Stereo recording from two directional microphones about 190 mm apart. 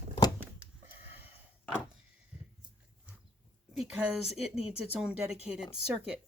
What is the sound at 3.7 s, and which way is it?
A woman's voice, centre (ahead or behind).